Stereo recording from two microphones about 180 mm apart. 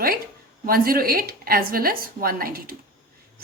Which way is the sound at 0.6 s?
55° right (ahead or behind).